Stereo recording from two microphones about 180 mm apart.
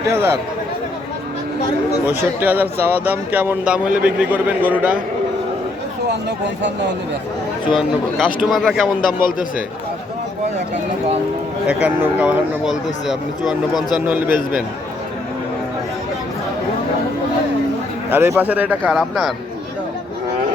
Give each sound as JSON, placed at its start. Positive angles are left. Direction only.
{"t": 0.1, "sound": "a man's voice", "side_deg": -15}
{"t": 2.0, "sound": "a man's voice", "side_deg": -10}
{"t": 6.1, "sound": "speech", "side_deg": -75}
{"t": 7.8, "sound": "a man's voice", "side_deg": 0}
{"t": 11.9, "sound": "a man's voice", "side_deg": -10}
{"t": 18.1, "sound": "a man's voice", "side_deg": -10}